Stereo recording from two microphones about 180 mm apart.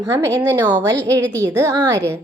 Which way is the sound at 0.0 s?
15° right (ahead or behind).